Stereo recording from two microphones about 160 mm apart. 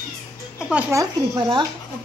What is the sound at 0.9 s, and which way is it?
Speech, 20° right (ahead or behind).